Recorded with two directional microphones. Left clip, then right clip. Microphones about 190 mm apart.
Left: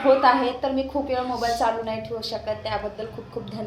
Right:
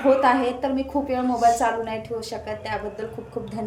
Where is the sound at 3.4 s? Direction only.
15° right (ahead or behind).